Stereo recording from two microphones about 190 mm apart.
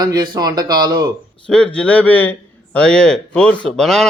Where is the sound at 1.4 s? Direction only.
5° left (ahead or behind).